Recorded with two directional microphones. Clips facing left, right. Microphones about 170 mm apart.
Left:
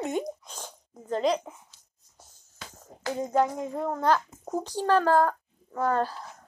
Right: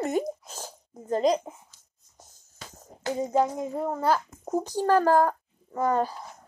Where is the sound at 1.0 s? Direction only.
40° right (ahead or behind).